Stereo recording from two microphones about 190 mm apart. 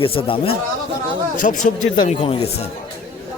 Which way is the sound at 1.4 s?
40° left (ahead or behind).